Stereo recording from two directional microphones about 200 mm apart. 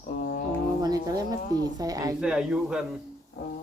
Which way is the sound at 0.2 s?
45° left (ahead or behind).